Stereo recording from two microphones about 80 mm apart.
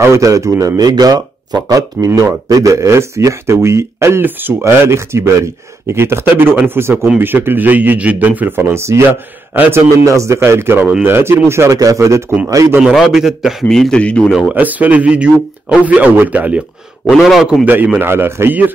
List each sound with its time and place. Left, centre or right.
0.0 s a man's voice: right
9.5 s a man's voice: right
9.8 s speech: right
11.8 s a man's voice: right
12.8 s a man's voice: centre
13.7 s speech: centre
14.5 s a man's voice: right
17.0 s a man's voice: centre
18.0 s speech: right